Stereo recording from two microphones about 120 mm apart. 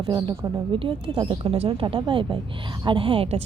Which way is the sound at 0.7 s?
45° right (ahead or behind).